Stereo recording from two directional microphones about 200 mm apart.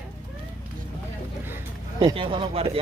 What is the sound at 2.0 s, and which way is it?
Speech, 25° right (ahead or behind).